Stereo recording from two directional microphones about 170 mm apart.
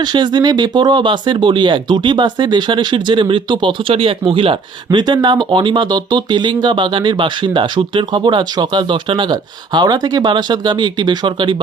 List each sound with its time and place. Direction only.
0.0 s speech: 25° right (ahead or behind)